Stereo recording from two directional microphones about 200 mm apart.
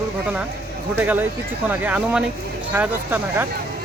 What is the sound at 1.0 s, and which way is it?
Speech, 10° right (ahead or behind).